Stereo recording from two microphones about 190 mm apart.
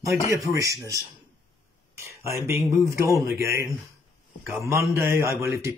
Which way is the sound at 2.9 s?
15° right (ahead or behind).